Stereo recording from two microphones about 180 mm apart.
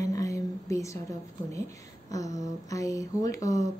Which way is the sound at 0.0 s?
20° left (ahead or behind).